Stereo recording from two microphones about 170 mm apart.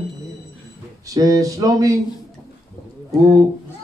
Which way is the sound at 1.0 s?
20° right (ahead or behind).